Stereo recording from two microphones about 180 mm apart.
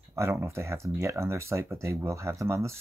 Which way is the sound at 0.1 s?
15° right (ahead or behind).